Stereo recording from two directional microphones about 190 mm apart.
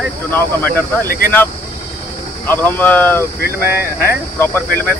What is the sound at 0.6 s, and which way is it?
Speech, 50° left (ahead or behind).